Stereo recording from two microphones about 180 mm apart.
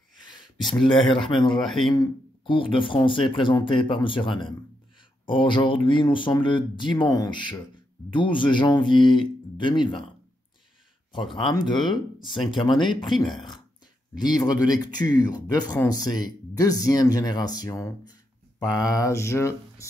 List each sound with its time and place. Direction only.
0.7 s speech: centre (ahead or behind)
1.9 s speech: 30° left (ahead or behind)
11.3 s speech: 25° left (ahead or behind)
14.1 s speech: 25° left (ahead or behind)